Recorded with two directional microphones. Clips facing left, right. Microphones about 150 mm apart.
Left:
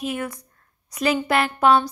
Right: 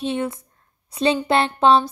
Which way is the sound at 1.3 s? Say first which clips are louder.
Right 1 dB; 25° right (ahead or behind).